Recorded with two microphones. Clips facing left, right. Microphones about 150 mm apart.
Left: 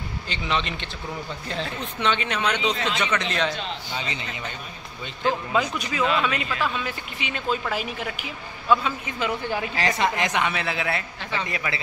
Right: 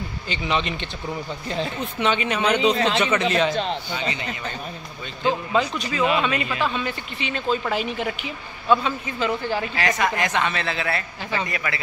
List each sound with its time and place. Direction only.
0.3 s speech: 5° right (ahead or behind)
2.7 s a man's voice: 40° right (ahead or behind)
3.0 s speech: 5° right (ahead or behind)
5.5 s a woman's voice: 5° left (ahead or behind)
6.3 s speech: 15° right (ahead or behind)
6.7 s a woman's voice: 5° left (ahead or behind)
9.0 s a woman's voice: 15° left (ahead or behind)
9.8 s a woman's voice: 30° left (ahead or behind)